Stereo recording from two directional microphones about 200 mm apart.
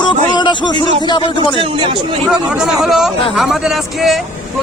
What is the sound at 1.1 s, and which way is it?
Speech, 25° left (ahead or behind).